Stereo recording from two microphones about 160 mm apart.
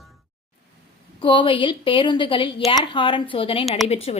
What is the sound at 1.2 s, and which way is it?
A woman's voice, 30° left (ahead or behind).